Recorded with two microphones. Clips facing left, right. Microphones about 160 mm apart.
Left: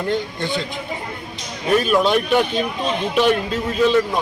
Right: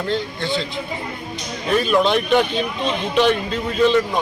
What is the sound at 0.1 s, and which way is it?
Speech, 15° left (ahead or behind).